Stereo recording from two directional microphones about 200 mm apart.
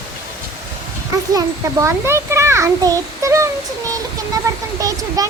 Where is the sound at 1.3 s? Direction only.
15° right (ahead or behind).